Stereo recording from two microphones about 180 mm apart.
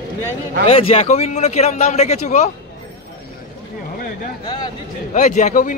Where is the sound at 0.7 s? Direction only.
35° left (ahead or behind).